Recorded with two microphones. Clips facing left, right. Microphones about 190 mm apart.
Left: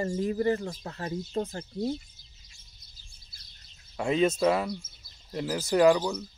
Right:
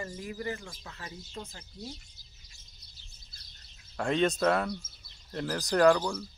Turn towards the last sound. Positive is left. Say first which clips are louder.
# left 2 dB
turn(degrees=5)  # may be behind; listen again after turning